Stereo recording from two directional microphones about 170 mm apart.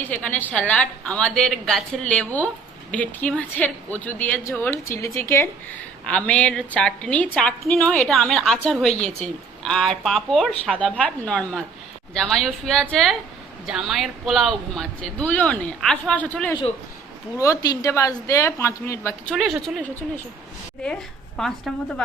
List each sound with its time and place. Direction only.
0.0 s a woman's voice: 10° left (ahead or behind)
17.4 s a woman's voice: 20° left (ahead or behind)
19.3 s a woman's voice: centre (ahead or behind)
21.3 s a woman's voice: centre (ahead or behind)